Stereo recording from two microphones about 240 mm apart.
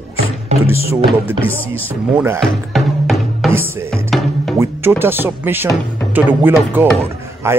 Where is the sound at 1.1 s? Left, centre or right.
Centre.